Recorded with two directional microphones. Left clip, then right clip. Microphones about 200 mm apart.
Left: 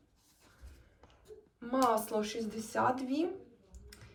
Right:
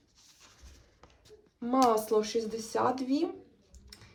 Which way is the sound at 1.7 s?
15° right (ahead or behind).